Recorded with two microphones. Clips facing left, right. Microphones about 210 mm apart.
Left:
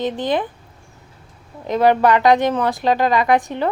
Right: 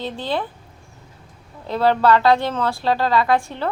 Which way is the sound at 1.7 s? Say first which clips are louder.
Left 2 dB; 15° left (ahead or behind).